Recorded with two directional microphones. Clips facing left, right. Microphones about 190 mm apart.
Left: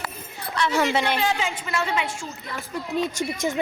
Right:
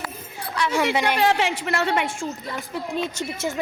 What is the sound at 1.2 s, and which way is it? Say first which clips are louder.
A woman's voice: right 5 dB; 70° right (ahead or behind).